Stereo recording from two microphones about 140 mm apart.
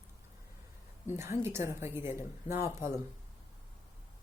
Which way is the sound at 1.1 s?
20° right (ahead or behind).